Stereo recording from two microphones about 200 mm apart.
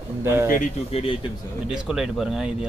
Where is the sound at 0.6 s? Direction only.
30° left (ahead or behind).